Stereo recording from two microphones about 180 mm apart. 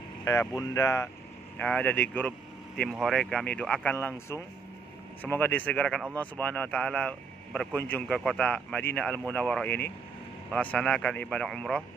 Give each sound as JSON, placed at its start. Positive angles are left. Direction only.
{"t": 0.2, "sound": "a man's voice", "side_deg": 15}